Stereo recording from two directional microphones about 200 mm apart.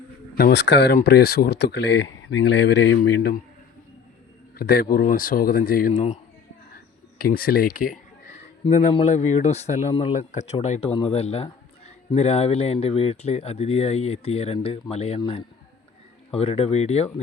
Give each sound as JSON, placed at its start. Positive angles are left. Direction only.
{"t": 0.3, "sound": "speech", "side_deg": 55}
{"t": 4.5, "sound": "a man's voice", "side_deg": 50}
{"t": 7.2, "sound": "speech", "side_deg": 45}
{"t": 8.6, "sound": "speech", "side_deg": 30}